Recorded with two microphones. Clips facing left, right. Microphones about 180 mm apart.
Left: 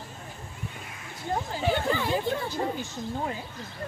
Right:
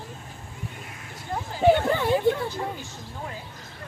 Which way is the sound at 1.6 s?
60° right (ahead or behind).